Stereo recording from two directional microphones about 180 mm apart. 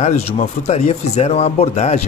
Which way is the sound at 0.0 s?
35° left (ahead or behind).